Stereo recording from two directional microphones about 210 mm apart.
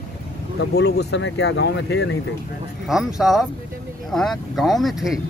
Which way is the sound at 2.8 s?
Centre (ahead or behind).